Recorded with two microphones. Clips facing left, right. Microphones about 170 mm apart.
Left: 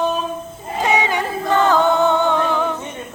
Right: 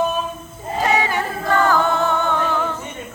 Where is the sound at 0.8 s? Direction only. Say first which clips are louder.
Left 1 dB; 20° left (ahead or behind).